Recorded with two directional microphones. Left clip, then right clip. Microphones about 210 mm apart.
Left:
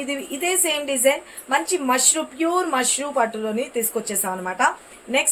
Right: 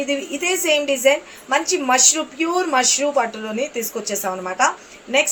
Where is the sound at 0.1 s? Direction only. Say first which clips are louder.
Even; 15° left (ahead or behind).